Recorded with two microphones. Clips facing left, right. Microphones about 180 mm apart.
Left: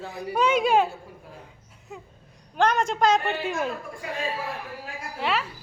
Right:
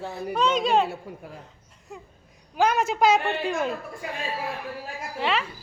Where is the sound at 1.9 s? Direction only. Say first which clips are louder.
Even; centre (ahead or behind).